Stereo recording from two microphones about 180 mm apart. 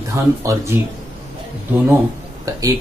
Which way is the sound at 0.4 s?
15° right (ahead or behind).